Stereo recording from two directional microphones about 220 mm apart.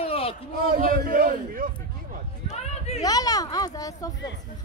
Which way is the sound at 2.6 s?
30° left (ahead or behind).